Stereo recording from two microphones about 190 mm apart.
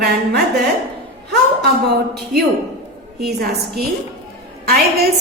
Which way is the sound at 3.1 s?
55° right (ahead or behind).